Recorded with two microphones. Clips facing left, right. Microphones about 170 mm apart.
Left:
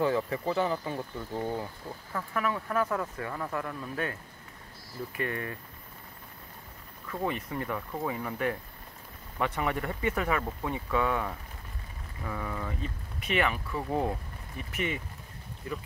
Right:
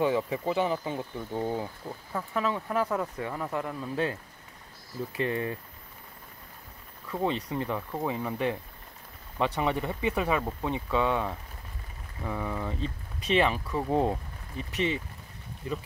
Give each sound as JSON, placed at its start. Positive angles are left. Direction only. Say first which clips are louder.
{"t": 0.0, "sound": "speech", "louder": "right 1 dB", "side_deg": -15}
{"t": 7.2, "sound": "speech", "louder": "right 3 dB", "side_deg": -25}
{"t": 12.3, "sound": "speech", "louder": "right 3 dB", "side_deg": -15}
{"t": 12.8, "sound": "speech", "louder": "right 4 dB", "side_deg": -30}